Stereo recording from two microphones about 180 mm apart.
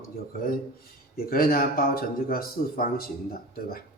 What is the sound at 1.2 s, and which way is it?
Speech, 55° left (ahead or behind).